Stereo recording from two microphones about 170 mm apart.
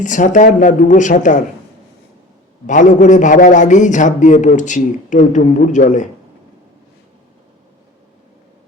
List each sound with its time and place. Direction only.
0.0 s a man's voice: 45° left (ahead or behind)
2.6 s a man's voice: 45° left (ahead or behind)